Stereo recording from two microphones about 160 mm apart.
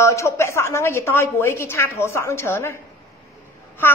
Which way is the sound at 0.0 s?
20° left (ahead or behind).